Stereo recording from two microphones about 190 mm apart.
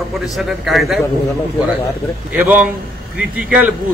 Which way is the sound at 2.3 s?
10° right (ahead or behind).